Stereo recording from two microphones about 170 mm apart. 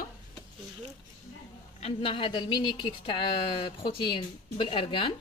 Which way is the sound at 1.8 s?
35° left (ahead or behind).